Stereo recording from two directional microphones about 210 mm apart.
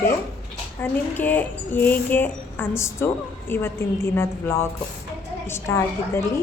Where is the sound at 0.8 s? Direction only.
10° left (ahead or behind).